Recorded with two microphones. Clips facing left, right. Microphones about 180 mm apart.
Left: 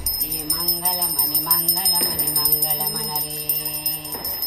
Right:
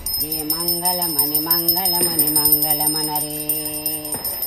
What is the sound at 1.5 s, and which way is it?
Alarm clock, 50° right (ahead or behind).